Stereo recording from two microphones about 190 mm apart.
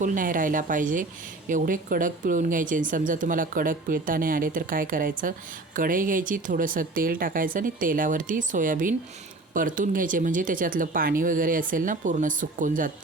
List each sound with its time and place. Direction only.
0.0 s speech: 45° right (ahead or behind)